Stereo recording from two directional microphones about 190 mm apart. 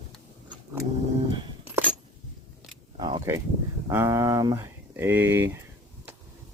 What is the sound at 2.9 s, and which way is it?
Speech, 20° right (ahead or behind).